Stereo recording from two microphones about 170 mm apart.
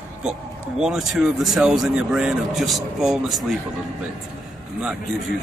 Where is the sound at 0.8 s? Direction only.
Centre (ahead or behind).